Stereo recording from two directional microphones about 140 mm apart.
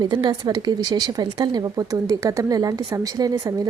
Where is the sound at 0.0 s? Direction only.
30° right (ahead or behind).